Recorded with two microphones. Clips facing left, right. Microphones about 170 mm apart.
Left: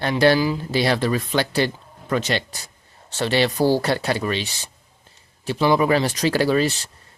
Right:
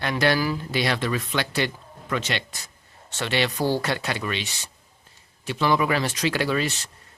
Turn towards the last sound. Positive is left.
turn(degrees=35)  # may be behind; listen again after turning